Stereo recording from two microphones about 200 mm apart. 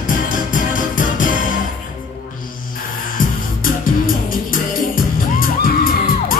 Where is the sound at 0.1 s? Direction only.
40° left (ahead or behind).